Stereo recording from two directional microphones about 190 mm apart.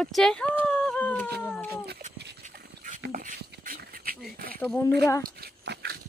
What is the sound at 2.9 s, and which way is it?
Beatboxing, 50° right (ahead or behind).